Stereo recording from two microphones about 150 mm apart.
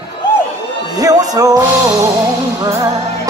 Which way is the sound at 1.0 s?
25° right (ahead or behind).